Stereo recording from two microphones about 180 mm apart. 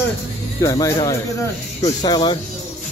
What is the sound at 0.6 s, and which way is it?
Speech, 20° left (ahead or behind).